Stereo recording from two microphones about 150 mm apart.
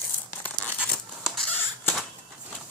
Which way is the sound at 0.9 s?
Centre (ahead or behind).